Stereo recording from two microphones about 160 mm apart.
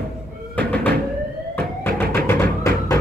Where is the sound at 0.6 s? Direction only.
10° left (ahead or behind).